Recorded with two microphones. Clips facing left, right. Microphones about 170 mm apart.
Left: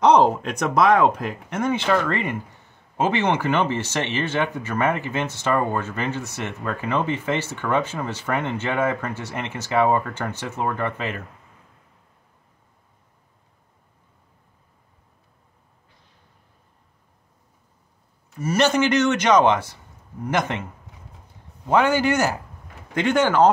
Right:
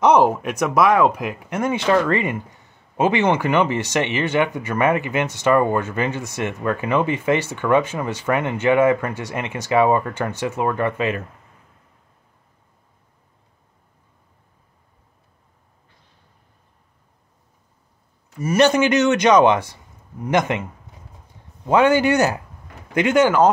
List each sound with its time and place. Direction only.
0.1 s speech: 10° right (ahead or behind)
18.4 s speech: 15° right (ahead or behind)
21.6 s speech: 15° right (ahead or behind)